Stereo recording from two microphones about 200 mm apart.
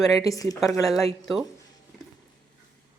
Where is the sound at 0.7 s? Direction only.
Centre (ahead or behind).